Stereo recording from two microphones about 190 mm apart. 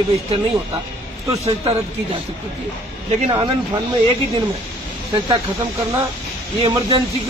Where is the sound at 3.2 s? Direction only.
25° right (ahead or behind).